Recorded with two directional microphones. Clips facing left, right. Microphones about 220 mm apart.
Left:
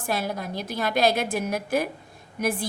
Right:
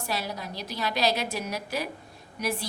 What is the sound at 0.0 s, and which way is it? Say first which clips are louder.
A woman's voice: left 5 dB; 50° left (ahead or behind).